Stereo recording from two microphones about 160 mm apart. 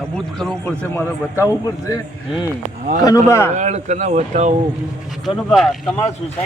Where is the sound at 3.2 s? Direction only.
15° left (ahead or behind).